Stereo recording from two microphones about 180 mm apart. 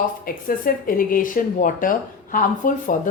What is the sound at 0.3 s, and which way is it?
Speech, 55° left (ahead or behind).